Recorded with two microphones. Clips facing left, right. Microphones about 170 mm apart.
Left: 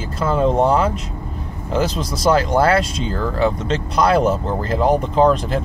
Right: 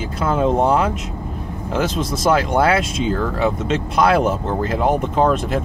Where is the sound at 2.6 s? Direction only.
Centre (ahead or behind).